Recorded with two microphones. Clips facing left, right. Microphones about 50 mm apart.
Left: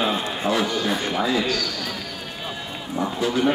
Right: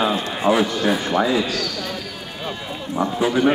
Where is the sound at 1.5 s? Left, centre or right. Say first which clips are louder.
Right 1 dB; centre.